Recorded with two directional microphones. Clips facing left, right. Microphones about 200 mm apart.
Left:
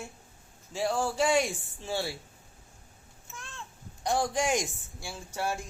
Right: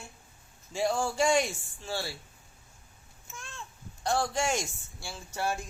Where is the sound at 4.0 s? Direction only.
15° left (ahead or behind).